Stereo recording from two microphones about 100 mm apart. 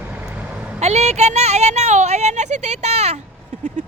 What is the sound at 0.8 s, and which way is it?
Speech, 90° right.